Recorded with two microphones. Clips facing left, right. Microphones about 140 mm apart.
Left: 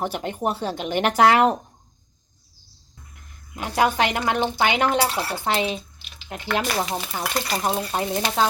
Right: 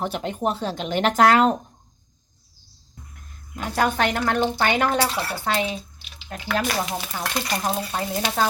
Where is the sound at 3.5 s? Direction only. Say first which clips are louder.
Left 2 dB; 10° left (ahead or behind).